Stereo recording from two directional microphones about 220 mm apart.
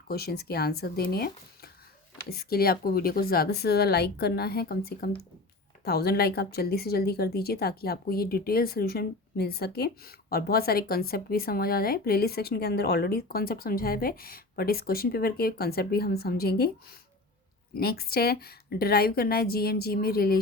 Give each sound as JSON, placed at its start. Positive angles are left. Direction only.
{"t": 0.1, "sound": "speech", "side_deg": 45}
{"t": 17.7, "sound": "speech", "side_deg": 45}